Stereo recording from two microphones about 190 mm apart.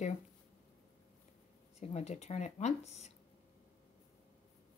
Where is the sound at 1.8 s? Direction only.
35° left (ahead or behind).